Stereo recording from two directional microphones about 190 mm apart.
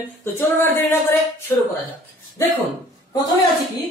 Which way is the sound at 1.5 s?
15° left (ahead or behind).